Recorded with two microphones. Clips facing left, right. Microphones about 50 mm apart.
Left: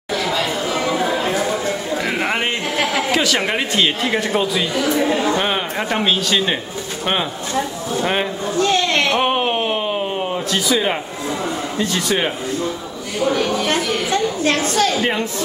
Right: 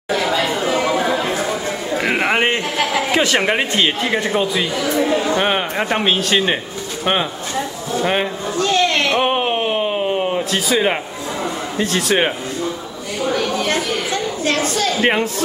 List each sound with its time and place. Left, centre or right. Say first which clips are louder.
0.1 s chatter: right 2 dB; right
2.0 s a sound: right 7 dB; right
3.1 s a woman's voice: right 2 dB; right
3.8 s speech: even; centre
6.0 s a man's voice: right 1 dB; right
6.3 s speech: right 2 dB; centre
8.0 s speech: right 2 dB; centre
8.5 s a sound: even; left
9.2 s a sound: even; centre
11.8 s a woman's voice: right 3 dB; right
15.0 s speech: right 3 dB; right